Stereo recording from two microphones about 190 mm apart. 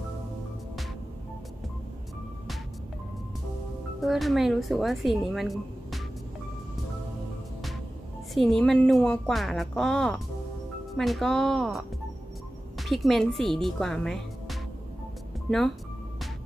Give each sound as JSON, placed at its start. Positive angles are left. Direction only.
{"t": 4.0, "sound": "a woman's voice", "side_deg": 0}
{"t": 8.4, "sound": "a woman's voice", "side_deg": 0}